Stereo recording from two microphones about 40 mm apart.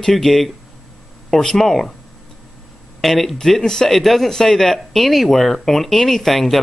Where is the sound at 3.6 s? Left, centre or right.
Centre.